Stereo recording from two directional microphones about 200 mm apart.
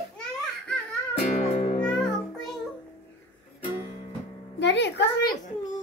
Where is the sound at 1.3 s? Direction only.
35° left (ahead or behind).